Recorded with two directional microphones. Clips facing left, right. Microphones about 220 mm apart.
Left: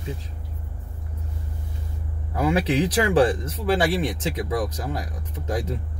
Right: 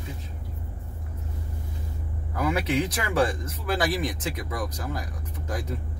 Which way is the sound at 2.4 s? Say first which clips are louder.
Left 4 dB; 30° left (ahead or behind).